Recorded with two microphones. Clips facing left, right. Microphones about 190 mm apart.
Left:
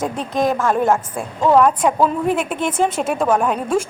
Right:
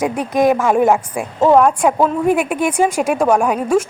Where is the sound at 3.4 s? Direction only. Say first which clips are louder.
Right 3 dB; 10° right (ahead or behind).